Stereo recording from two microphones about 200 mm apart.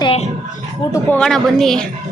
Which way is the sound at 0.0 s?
30° left (ahead or behind).